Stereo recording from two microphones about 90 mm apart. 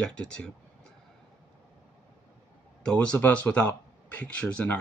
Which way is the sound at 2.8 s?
15° left (ahead or behind).